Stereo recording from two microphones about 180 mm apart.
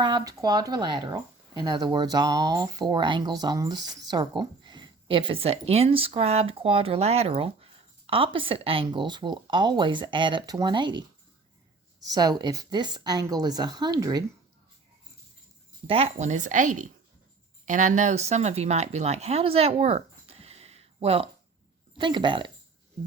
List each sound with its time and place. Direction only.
0.0 s speech: 25° right (ahead or behind)
15.9 s speech: 35° right (ahead or behind)